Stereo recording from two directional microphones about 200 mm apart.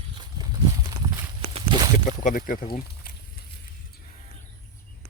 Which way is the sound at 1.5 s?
25° right (ahead or behind).